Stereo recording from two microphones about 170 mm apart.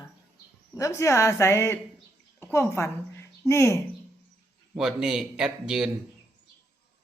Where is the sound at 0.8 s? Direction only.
20° left (ahead or behind).